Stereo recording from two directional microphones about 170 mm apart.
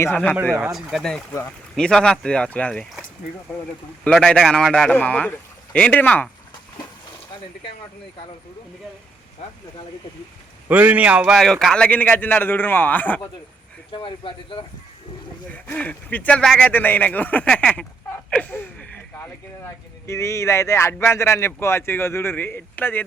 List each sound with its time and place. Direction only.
0.0 s a man's voice: 10° left (ahead or behind)
0.5 s a man's voice: 5° right (ahead or behind)
4.0 s a man's voice: 5° left (ahead or behind)
9.4 s speech: 40° left (ahead or behind)
10.7 s a man's voice: 10° right (ahead or behind); by 13.2 s 10° left (ahead or behind)
13.9 s speech: 30° left (ahead or behind)
15.5 s a man's voice: 10° left (ahead or behind)